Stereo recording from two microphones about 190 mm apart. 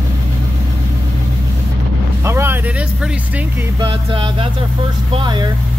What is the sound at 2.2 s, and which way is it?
Vehicle, 15° right (ahead or behind).